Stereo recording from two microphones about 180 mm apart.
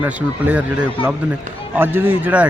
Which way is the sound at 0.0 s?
10° right (ahead or behind).